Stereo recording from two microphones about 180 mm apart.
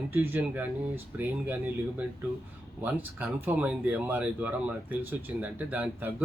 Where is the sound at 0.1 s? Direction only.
10° right (ahead or behind).